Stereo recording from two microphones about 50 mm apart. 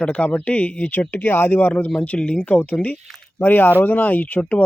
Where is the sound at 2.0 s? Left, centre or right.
Left.